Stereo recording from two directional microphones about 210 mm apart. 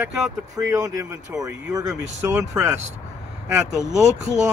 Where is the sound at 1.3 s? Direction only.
5° right (ahead or behind).